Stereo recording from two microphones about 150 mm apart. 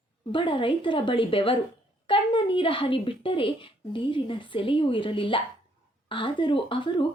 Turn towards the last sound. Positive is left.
turn(degrees=35)  # may be behind; listen again after turning